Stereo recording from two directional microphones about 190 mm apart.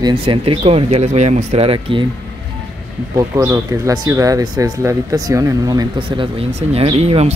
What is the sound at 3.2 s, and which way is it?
Speech, 15° right (ahead or behind).